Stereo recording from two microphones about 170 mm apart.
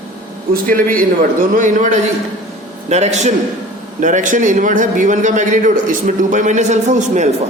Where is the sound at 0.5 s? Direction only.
55° right (ahead or behind).